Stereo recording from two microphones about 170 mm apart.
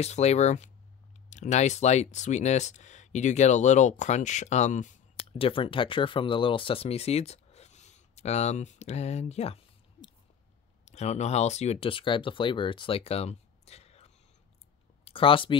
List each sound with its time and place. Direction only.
0.0 s speech: 40° left (ahead or behind)
10.9 s speech: 40° left (ahead or behind)